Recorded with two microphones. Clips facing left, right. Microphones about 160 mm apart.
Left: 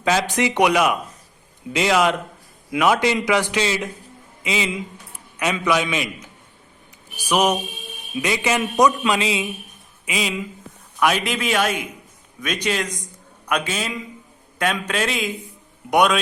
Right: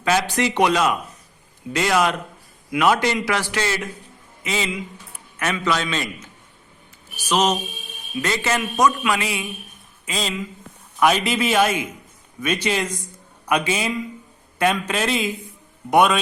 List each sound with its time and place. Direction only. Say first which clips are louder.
0.0 s a man's voice: even; 15° left (ahead or behind)
10.1 s a man's voice: left 2 dB; 10° left (ahead or behind)
11.0 s a man's voice: right 2 dB; centre (ahead or behind)